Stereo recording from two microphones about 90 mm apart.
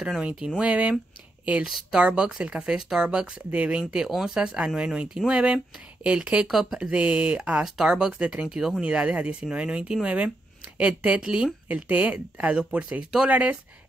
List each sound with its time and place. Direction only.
0.0 s speech: 10° right (ahead or behind)